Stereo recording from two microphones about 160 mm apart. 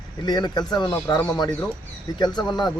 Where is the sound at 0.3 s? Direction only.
25° left (ahead or behind).